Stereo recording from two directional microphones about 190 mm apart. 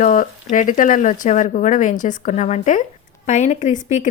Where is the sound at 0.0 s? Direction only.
40° left (ahead or behind).